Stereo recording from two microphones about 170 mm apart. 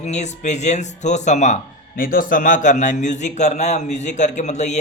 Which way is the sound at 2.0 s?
55° left (ahead or behind).